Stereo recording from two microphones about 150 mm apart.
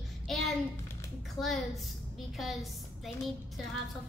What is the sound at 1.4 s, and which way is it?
Speech, 25° left (ahead or behind).